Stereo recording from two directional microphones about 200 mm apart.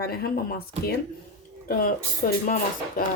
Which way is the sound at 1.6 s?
50° left (ahead or behind).